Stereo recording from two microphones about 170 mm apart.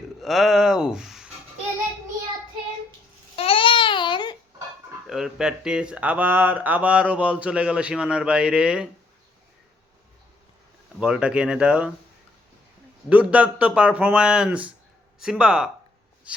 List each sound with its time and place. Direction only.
0.2 s a sound: centre (ahead or behind)
3.3 s babbling: 30° left (ahead or behind)
5.0 s speech: 5° right (ahead or behind)
11.0 s speech: 5° right (ahead or behind)
13.1 s speech: 10° right (ahead or behind)